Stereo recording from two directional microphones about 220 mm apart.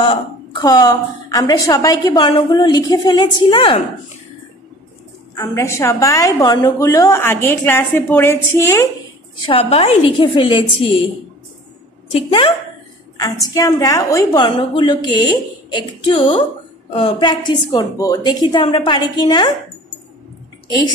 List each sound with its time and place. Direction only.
0.0 s a woman's voice: 20° left (ahead or behind)
5.3 s a woman's voice: 15° left (ahead or behind)
9.5 s a woman's voice: 25° left (ahead or behind)
12.1 s a woman's voice: 25° left (ahead or behind)
13.2 s a woman's voice: 15° left (ahead or behind)